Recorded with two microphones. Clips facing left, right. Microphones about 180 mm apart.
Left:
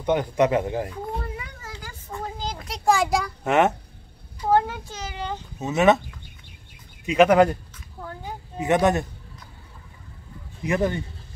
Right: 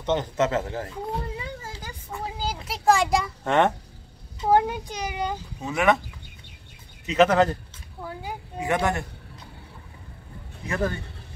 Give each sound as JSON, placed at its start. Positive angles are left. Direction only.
{"t": 0.0, "sound": "speech", "side_deg": 10}
{"t": 1.3, "sound": "children playing", "side_deg": -30}
{"t": 1.9, "sound": "a sound", "side_deg": -10}
{"t": 4.4, "sound": "speech", "side_deg": -15}
{"t": 5.6, "sound": "speech", "side_deg": 25}
{"t": 7.1, "sound": "speech", "side_deg": 15}
{"t": 8.0, "sound": "a sound", "side_deg": -10}
{"t": 8.5, "sound": "speech", "side_deg": 20}
{"t": 10.6, "sound": "speech", "side_deg": 20}